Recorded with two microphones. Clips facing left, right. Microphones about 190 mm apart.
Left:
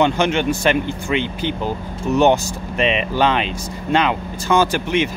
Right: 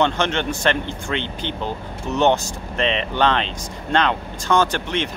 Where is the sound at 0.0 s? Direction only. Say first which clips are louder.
Left 4 dB; 10° left (ahead or behind).